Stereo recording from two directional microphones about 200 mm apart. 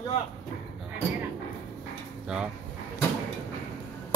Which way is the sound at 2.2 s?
5° right (ahead or behind).